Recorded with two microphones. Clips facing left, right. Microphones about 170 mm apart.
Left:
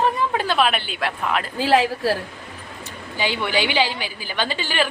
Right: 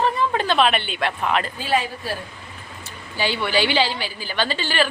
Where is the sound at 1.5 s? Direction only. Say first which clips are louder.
Left 5 dB; 90° left.